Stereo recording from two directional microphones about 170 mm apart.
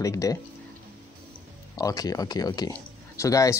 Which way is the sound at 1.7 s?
20° left (ahead or behind).